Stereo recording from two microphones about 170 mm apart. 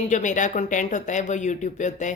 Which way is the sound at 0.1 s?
45° left (ahead or behind).